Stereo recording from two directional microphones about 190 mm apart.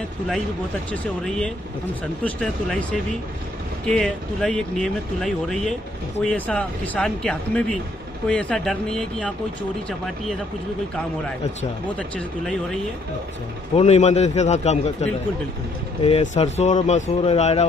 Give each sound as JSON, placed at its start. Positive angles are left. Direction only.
{"t": 1.2, "sound": "speech", "side_deg": 5}
{"t": 12.0, "sound": "speech", "side_deg": 0}
{"t": 13.7, "sound": "speech", "side_deg": 35}